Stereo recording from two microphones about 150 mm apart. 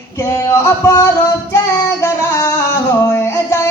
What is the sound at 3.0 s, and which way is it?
Singing, 20° left (ahead or behind).